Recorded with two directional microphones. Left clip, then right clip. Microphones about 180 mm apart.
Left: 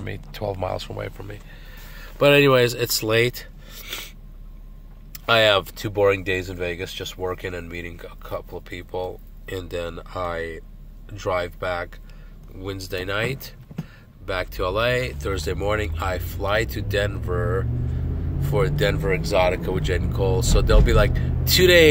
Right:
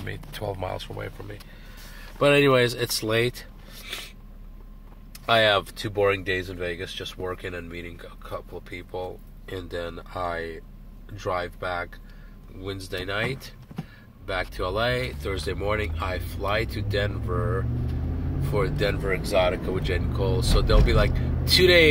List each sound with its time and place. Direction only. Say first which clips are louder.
0.0 s speech: left 3 dB; 20° left (ahead or behind)
5.1 s speech: left 3 dB; 20° left (ahead or behind)
19.0 s speech: left 2 dB; 35° left (ahead or behind)